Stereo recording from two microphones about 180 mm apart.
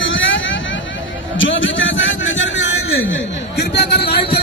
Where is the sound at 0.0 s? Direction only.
90° left.